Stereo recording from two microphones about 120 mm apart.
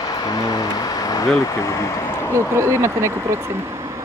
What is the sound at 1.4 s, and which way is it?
Speech, 25° left (ahead or behind).